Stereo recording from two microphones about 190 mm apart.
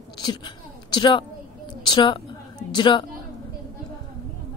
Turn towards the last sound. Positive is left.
turn(degrees=25)  # may be behind; listen again after turning